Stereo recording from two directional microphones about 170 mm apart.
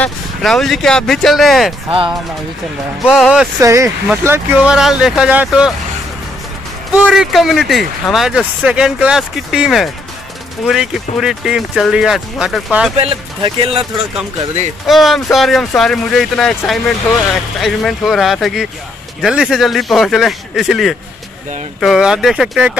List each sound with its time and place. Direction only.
0.0 s speech: centre (ahead or behind)
1.9 s speech: 30° right (ahead or behind)
3.1 s speech: 5° right (ahead or behind)
3.6 s speech: 15° right (ahead or behind)
7.1 s speech: centre (ahead or behind)
12.9 s speech: 35° right (ahead or behind)
14.9 s speech: centre (ahead or behind)